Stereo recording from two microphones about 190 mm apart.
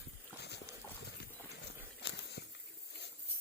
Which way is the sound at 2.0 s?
60° left (ahead or behind).